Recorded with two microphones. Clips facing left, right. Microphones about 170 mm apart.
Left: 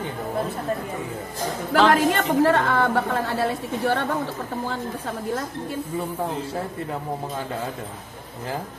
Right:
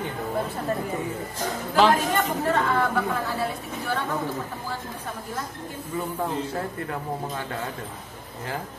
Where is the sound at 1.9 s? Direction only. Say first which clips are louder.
Left 4 dB; 80° left.